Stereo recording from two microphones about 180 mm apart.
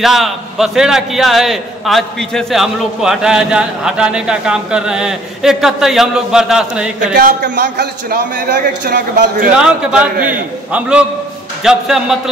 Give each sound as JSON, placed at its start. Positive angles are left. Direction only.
{"t": 0.0, "sound": "a man's voice", "side_deg": 0}
{"t": 7.4, "sound": "a man's voice", "side_deg": -70}
{"t": 9.6, "sound": "a man's voice", "side_deg": -5}